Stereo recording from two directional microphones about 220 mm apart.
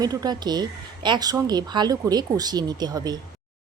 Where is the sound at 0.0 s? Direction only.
15° right (ahead or behind).